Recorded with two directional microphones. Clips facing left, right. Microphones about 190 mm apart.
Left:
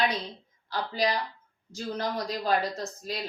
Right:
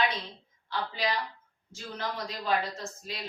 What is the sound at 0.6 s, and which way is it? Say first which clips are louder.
A woman's voice: left 3 dB; 40° left (ahead or behind).